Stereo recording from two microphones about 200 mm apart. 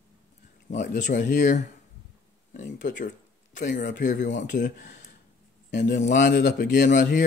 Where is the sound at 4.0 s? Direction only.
40° left (ahead or behind).